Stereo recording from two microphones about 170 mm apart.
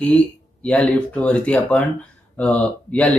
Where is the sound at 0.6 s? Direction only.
5° left (ahead or behind).